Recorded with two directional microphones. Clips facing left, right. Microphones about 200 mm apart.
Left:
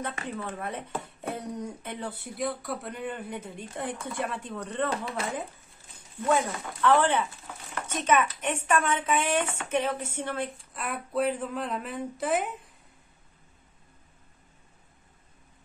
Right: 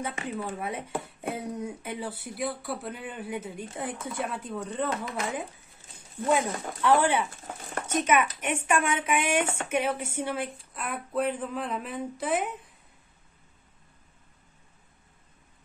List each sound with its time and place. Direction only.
0.1 s speech: 25° right (ahead or behind)
0.5 s speech: 10° right (ahead or behind)
4.9 s speech: 30° left (ahead or behind)
6.2 s speech: 15° right (ahead or behind)
7.4 s a sound: 45° right (ahead or behind)
8.0 s speech: 10° right (ahead or behind)